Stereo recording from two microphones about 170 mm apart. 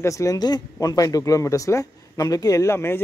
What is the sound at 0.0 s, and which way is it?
Speech, 20° left (ahead or behind).